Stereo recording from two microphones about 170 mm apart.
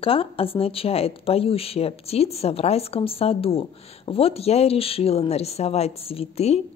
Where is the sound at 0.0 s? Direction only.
35° left (ahead or behind).